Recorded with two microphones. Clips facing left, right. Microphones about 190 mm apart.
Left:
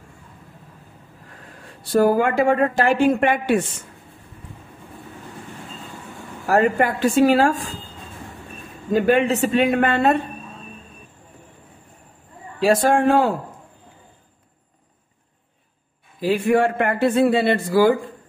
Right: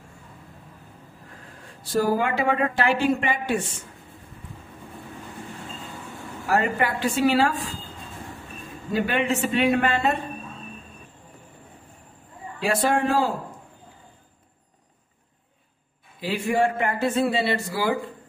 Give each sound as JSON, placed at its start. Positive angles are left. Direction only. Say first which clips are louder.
{"t": 1.8, "sound": "a woman's voice", "louder": "left 6 dB", "side_deg": 60}
{"t": 6.4, "sound": "a woman's voice", "louder": "left 5 dB", "side_deg": 45}
{"t": 8.9, "sound": "a woman's voice", "louder": "left 7 dB", "side_deg": 45}
{"t": 12.6, "sound": "a woman's voice", "louder": "left 6 dB", "side_deg": 45}
{"t": 16.2, "sound": "a man's voice", "louder": "left 5 dB", "side_deg": 55}